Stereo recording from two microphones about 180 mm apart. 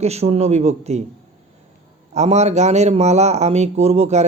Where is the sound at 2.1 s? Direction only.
40° right (ahead or behind).